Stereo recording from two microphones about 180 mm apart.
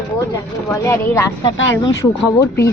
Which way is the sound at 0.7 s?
15° left (ahead or behind).